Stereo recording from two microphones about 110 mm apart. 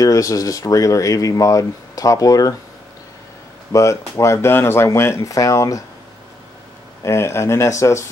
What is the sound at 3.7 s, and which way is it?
Speech, 30° left (ahead or behind).